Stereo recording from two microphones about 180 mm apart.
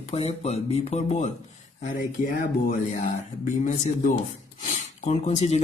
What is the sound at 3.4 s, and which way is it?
Speech, 45° left (ahead or behind).